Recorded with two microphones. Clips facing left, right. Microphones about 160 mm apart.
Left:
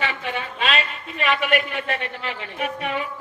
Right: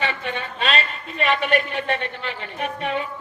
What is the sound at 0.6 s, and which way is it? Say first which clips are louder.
A man's voice: right 1 dB; 35° right (ahead or behind).